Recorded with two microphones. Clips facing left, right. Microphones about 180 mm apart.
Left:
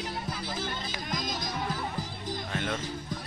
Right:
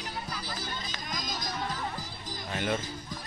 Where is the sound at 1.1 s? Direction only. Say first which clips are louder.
Left 3 dB; 55° left (ahead or behind).